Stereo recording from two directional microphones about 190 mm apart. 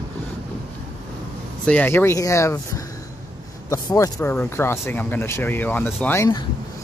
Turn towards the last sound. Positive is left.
turn(degrees=15)  # may be behind; listen again after turning